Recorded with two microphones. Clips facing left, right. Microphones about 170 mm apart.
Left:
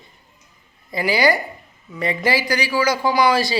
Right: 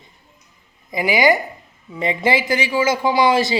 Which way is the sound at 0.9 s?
20° right (ahead or behind).